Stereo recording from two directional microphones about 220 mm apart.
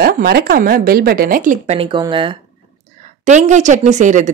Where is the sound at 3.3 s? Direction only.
35° right (ahead or behind).